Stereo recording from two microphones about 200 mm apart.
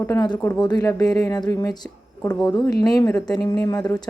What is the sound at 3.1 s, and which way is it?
Speech, 5° left (ahead or behind).